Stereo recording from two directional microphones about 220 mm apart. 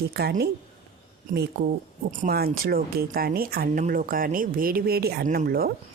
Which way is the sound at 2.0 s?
40° right (ahead or behind).